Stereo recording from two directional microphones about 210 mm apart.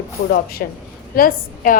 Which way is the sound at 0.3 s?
45° left (ahead or behind).